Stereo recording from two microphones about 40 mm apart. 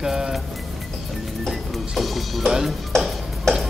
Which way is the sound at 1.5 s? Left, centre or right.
Centre.